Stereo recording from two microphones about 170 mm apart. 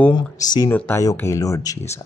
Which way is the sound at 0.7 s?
10° left (ahead or behind).